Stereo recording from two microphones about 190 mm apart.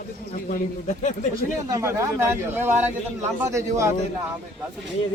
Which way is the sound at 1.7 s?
15° right (ahead or behind).